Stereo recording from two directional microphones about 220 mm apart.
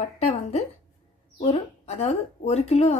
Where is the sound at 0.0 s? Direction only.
30° left (ahead or behind).